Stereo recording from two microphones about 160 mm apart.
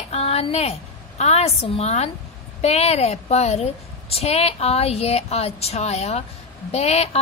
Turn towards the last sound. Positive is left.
turn(degrees=40)  # may be behind; listen again after turning